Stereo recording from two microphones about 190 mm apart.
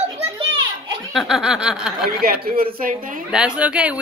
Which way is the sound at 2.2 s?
50° right (ahead or behind).